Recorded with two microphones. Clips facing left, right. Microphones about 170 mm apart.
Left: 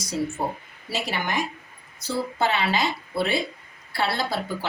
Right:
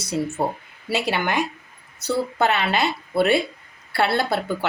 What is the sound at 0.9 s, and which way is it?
Speech, 70° right (ahead or behind).